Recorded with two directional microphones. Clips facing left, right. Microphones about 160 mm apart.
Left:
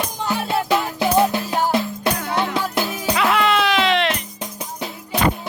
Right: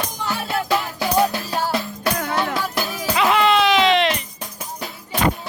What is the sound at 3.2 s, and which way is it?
Music, centre (ahead or behind).